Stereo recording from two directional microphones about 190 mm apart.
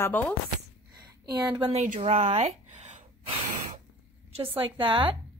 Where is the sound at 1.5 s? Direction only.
25° right (ahead or behind).